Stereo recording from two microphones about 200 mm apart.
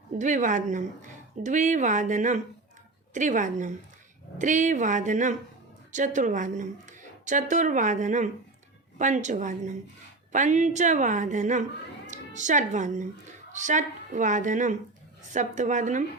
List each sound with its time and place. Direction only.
0.2 s a woman's voice: 40° right (ahead or behind)